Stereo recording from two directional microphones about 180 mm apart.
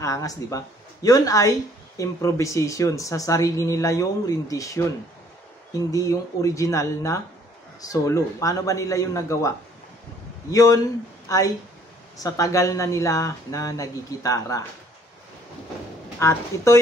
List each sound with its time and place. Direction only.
0.0 s speech: 20° left (ahead or behind)
10.5 s speech: 20° left (ahead or behind)
16.2 s speech: 15° left (ahead or behind)